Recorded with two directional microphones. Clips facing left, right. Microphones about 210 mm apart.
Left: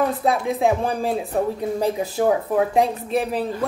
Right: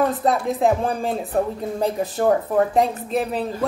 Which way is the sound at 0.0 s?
5° left (ahead or behind).